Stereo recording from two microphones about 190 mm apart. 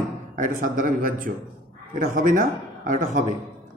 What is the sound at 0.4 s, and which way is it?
A man's voice, 50° right (ahead or behind).